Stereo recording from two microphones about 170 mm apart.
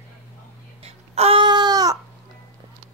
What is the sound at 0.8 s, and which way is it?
Babbling, 35° right (ahead or behind).